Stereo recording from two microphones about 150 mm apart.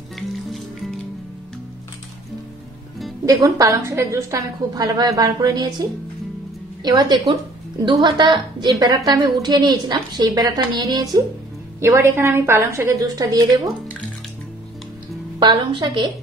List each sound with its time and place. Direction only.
3.3 s a woman's voice: 25° right (ahead or behind)
15.3 s a woman's voice: 35° right (ahead or behind)